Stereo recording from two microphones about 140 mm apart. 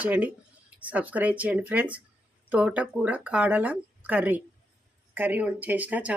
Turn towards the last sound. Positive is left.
turn(degrees=-10)  # may be behind; listen again after turning